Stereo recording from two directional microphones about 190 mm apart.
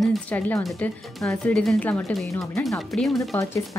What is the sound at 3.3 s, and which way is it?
Speech, 15° left (ahead or behind).